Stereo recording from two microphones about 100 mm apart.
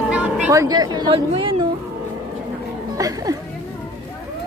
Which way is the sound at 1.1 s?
65° right (ahead or behind).